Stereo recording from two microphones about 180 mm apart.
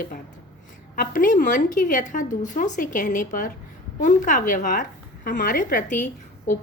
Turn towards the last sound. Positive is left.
turn(degrees=45)  # may be behind; listen again after turning